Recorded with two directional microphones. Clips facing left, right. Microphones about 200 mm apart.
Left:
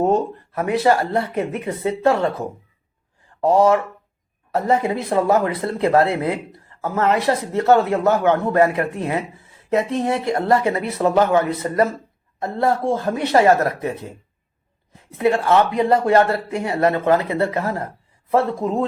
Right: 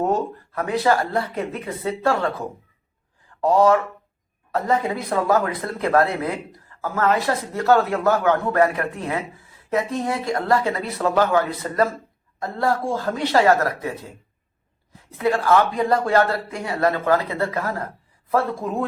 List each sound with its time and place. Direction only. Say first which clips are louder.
0.0 s speech: left 4 dB; 20° left (ahead or behind)
3.4 s speech: left 1 dB; 25° left (ahead or behind)
15.1 s speech: left 2 dB; 25° left (ahead or behind)